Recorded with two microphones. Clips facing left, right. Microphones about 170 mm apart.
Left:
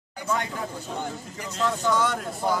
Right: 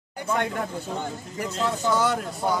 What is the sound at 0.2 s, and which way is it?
Speech, 55° right (ahead or behind).